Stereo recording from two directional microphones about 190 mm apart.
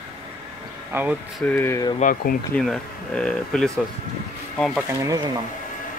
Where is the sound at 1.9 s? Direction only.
45° left (ahead or behind).